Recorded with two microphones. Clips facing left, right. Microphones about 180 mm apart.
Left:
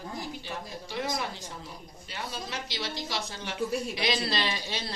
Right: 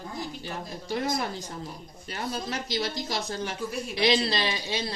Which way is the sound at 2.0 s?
45° right (ahead or behind).